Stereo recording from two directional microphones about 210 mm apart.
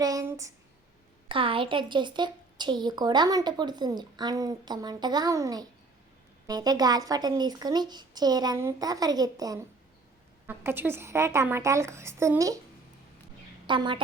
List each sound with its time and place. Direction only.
0.0 s a sound: 15° right (ahead or behind)
1.3 s a woman's voice: 25° right (ahead or behind)
13.7 s a woman's voice: 20° right (ahead or behind)